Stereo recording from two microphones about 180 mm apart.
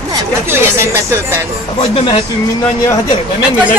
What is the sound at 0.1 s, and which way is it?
Speech, 15° right (ahead or behind).